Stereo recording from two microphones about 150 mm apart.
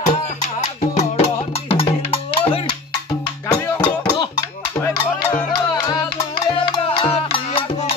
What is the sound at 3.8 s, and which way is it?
Music, 15° left (ahead or behind).